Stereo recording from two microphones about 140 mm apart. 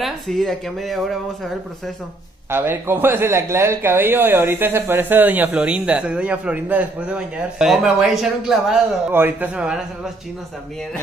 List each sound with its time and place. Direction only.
0.0 s speech: centre (ahead or behind)
2.5 s speech: 15° right (ahead or behind)
9.1 s speech: 15° right (ahead or behind)